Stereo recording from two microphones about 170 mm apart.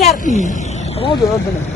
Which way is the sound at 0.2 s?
45° left (ahead or behind).